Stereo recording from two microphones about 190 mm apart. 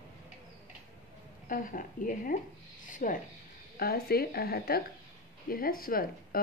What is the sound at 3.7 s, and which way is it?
Speech, 55° left (ahead or behind).